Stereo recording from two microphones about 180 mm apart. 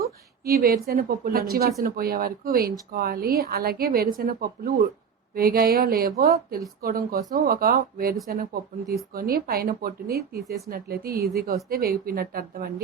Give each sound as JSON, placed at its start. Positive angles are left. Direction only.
{"t": 0.0, "sound": "a woman's voice", "side_deg": -55}